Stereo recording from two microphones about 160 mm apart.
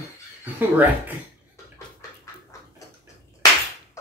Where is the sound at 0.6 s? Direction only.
10° right (ahead or behind).